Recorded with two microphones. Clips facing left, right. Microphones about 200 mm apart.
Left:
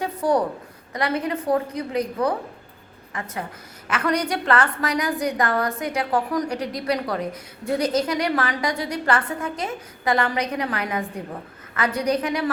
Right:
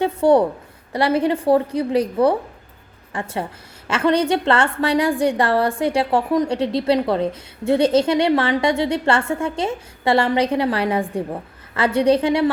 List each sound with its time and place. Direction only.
0.0 s a woman's voice: 25° right (ahead or behind)